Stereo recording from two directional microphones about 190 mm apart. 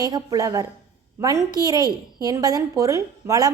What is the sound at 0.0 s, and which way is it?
A woman's voice, 20° right (ahead or behind).